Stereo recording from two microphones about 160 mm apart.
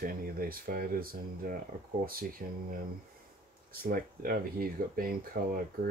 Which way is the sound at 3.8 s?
65° right (ahead or behind).